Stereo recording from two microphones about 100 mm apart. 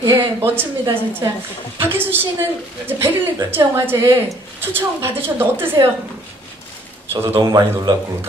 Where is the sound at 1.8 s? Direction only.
20° right (ahead or behind).